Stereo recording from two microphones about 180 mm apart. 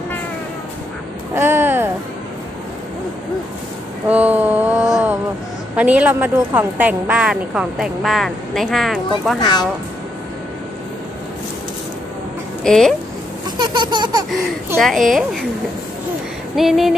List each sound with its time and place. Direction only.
1.3 s a sound: 10° right (ahead or behind)
4.1 s a sound: 10° right (ahead or behind)
5.8 s a woman's voice: 5° right (ahead or behind)
12.6 s a woman's voice: 5° left (ahead or behind)
13.6 s baby laughter: 25° right (ahead or behind)
14.8 s a woman's voice: centre (ahead or behind)
16.5 s a woman's voice: centre (ahead or behind)